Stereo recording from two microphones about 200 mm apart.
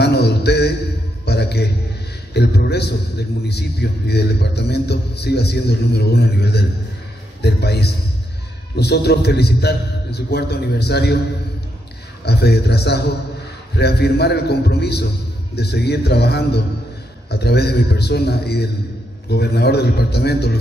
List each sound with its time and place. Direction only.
0.0 s a sound: 55° left (ahead or behind)
2.3 s a man's voice: 55° left (ahead or behind)
12.3 s a man's voice: 55° left (ahead or behind)